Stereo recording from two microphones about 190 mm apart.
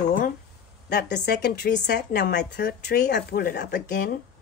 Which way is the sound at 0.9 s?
60° left (ahead or behind).